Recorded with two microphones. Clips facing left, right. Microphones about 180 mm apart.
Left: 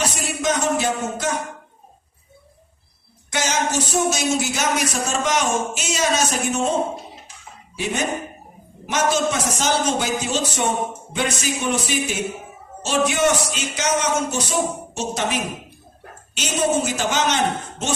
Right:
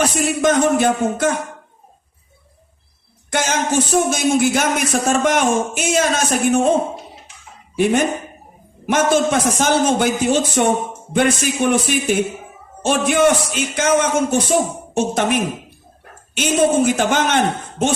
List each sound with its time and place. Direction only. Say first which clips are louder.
0.0 s speech: right 7 dB; 55° right (ahead or behind)
3.2 s speech: right 3 dB; 55° right (ahead or behind)
7.8 s speech: right 8 dB; 55° right (ahead or behind)